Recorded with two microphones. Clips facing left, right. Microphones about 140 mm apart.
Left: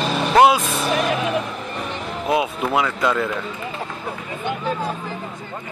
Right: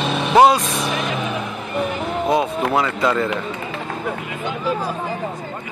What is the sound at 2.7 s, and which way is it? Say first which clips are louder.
Speech: even; centre (ahead or behind).